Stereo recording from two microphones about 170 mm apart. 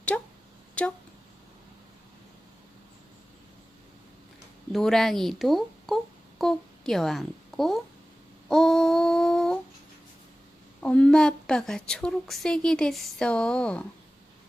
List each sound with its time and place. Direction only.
0.1 s a sound: 5° left (ahead or behind)
0.8 s speech: 5° left (ahead or behind)
4.7 s a woman's voice: centre (ahead or behind)
8.4 s humming: 5° left (ahead or behind)
10.8 s a woman's voice: 5° left (ahead or behind)